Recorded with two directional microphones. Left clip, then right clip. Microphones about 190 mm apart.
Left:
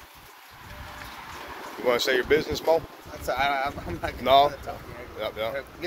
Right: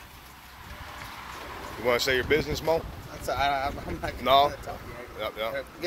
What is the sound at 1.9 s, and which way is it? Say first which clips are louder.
Speech: left 2 dB; 25° left (ahead or behind).